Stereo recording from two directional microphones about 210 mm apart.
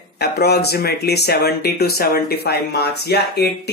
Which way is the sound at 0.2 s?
50° left (ahead or behind).